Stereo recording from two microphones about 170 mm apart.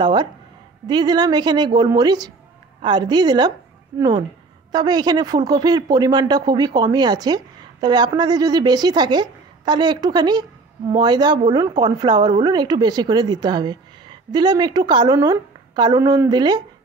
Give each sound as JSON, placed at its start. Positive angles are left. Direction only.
{"t": 0.0, "sound": "a woman's voice", "side_deg": -25}